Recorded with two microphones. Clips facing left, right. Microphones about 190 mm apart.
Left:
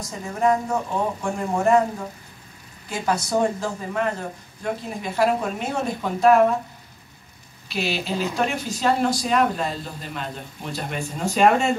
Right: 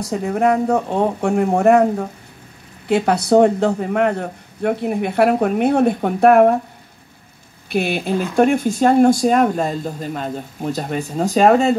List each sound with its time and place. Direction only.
0.0 s speech: 65° right (ahead or behind)
7.6 s speech: 55° right (ahead or behind); by 11.7 s 35° right (ahead or behind)